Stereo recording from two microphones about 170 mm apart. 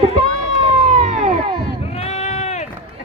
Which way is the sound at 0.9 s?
45° right (ahead or behind).